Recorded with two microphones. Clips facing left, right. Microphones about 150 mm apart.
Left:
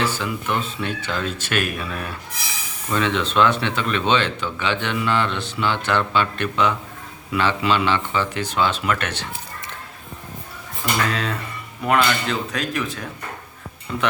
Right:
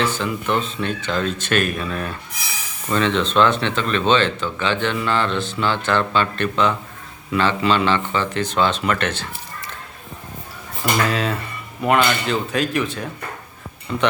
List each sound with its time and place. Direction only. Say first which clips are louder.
0.0 s speech: right 2 dB; 10° left (ahead or behind)
11.1 s speech: right 3 dB; centre (ahead or behind)